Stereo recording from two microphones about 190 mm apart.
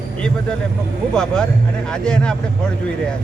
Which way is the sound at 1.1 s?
5° left (ahead or behind).